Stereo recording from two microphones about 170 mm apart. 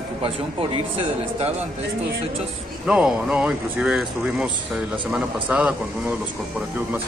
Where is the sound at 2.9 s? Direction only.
5° right (ahead or behind).